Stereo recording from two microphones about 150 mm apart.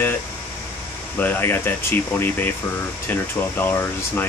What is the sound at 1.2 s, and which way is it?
Speech, 15° left (ahead or behind).